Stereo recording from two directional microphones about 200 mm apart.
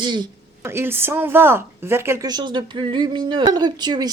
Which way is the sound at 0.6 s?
10° right (ahead or behind).